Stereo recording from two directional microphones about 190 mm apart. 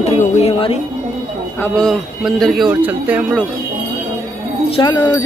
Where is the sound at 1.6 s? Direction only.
5° left (ahead or behind).